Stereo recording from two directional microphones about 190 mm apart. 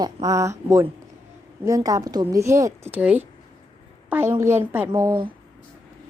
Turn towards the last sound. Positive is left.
turn(degrees=-20)  # may be behind; listen again after turning